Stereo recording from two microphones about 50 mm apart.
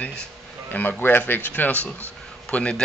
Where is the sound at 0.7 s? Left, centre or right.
Left.